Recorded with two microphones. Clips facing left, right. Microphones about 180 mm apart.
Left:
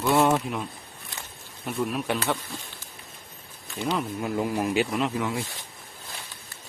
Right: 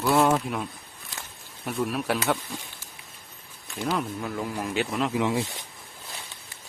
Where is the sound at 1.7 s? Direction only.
Centre (ahead or behind).